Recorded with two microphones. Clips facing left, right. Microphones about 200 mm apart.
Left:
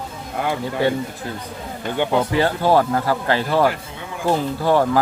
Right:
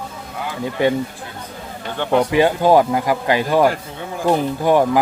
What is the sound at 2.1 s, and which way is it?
Speech, 15° right (ahead or behind).